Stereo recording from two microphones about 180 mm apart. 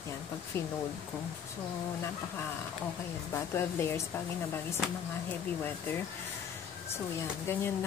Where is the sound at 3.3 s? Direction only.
15° left (ahead or behind).